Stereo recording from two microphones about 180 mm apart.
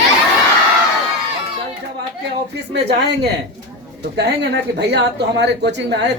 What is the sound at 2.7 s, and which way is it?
Speech, 65° right (ahead or behind).